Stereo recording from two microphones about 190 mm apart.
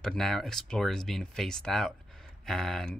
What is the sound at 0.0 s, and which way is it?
Speech, centre (ahead or behind).